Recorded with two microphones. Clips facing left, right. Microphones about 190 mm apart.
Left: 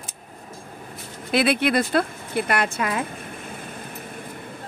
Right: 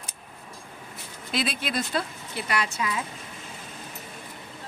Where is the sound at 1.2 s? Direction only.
60° left (ahead or behind).